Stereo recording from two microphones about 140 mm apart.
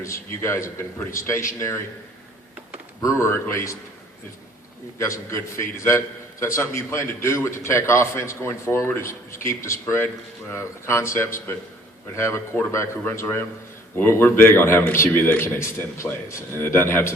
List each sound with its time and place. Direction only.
0.0 s a man's voice: 20° left (ahead or behind)
3.0 s a man's voice: 20° left (ahead or behind)
4.9 s a man's voice: 20° left (ahead or behind)